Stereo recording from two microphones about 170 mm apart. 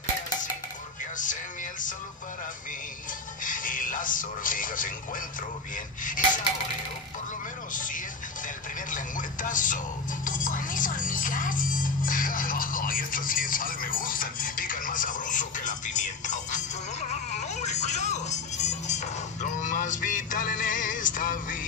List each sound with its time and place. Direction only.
1.1 s music: 50° left (ahead or behind)
3.4 s television: 50° left (ahead or behind)
6.0 s dishes: 50° left (ahead or behind)
7.7 s music: 50° left (ahead or behind)
8.9 s speech: 50° left (ahead or behind)
10.2 s music: 50° left (ahead or behind)